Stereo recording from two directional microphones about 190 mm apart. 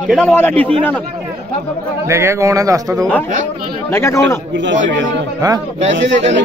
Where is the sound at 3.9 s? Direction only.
15° left (ahead or behind).